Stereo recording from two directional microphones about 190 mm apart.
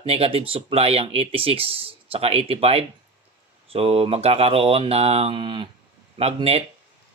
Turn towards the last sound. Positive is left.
turn(degrees=-30)  # may be behind; listen again after turning